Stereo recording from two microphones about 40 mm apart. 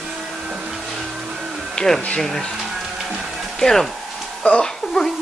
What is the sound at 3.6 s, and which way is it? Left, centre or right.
Speech, centre.